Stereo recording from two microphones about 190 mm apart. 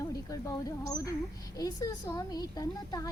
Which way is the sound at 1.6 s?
20° left (ahead or behind).